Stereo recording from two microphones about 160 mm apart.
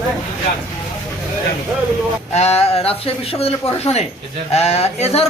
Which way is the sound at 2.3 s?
40° left (ahead or behind).